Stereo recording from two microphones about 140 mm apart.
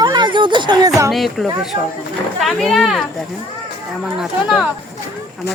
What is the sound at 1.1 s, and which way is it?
Speech, centre (ahead or behind).